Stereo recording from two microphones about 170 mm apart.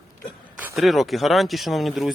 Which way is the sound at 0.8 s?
Centre (ahead or behind).